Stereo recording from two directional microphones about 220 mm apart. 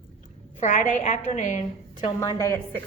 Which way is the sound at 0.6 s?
35° left (ahead or behind).